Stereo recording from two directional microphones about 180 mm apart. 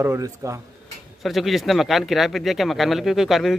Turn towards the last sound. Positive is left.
turn(degrees=0)  # may be behind; listen again after turning